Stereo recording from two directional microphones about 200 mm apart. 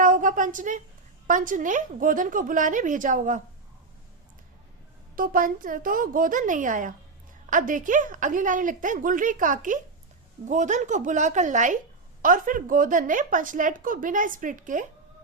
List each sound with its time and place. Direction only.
0.0 s a woman's voice: 40° right (ahead or behind)
5.1 s a woman's voice: 45° right (ahead or behind)